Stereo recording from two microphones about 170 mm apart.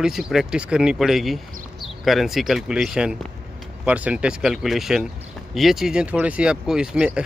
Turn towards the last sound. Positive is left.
turn(degrees=-5)  # may be behind; listen again after turning